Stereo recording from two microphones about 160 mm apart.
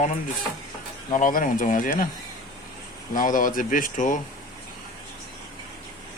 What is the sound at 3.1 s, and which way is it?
Speech, 55° left (ahead or behind).